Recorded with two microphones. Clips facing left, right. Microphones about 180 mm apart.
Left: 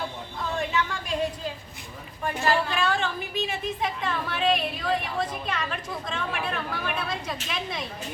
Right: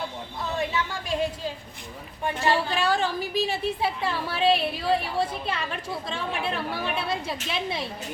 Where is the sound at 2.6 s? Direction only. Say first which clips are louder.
Right 2 dB; 35° right (ahead or behind).